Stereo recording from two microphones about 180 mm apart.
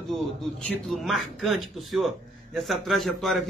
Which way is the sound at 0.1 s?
Centre (ahead or behind).